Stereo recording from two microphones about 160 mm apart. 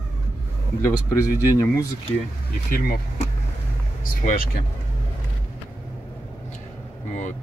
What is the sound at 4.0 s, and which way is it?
Speech, 60° left (ahead or behind).